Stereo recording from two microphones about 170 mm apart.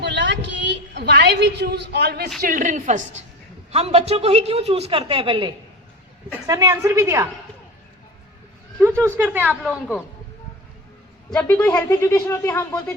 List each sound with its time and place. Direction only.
0.0 s a sound: 90° right
2.4 s a woman's voice: 50° right (ahead or behind)
3.7 s a woman's voice: 35° right (ahead or behind)
6.5 s a woman's voice: 20° right (ahead or behind)
8.8 s a woman's voice: 15° right (ahead or behind)
9.6 s speech: centre (ahead or behind)
11.3 s speech: 5° left (ahead or behind)